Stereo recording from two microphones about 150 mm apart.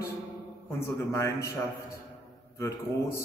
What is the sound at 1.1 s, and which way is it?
Speech, 20° left (ahead or behind).